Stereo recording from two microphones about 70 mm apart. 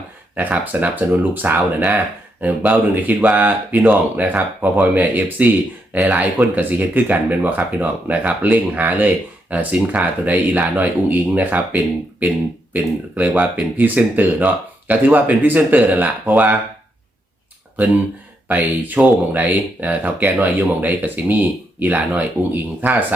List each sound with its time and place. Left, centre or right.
0.3 s speech: right
18.4 s speech: right